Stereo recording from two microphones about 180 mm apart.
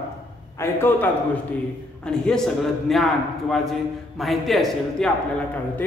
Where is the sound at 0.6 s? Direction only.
10° left (ahead or behind).